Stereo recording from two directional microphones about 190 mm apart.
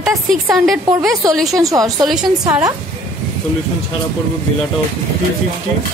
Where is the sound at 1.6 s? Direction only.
20° right (ahead or behind).